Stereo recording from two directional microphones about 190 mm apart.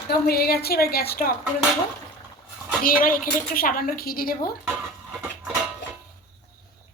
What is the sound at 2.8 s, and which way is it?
A woman's voice, 45° left (ahead or behind).